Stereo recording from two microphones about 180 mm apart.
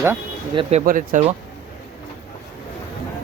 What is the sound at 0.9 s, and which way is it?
Speech, 45° right (ahead or behind).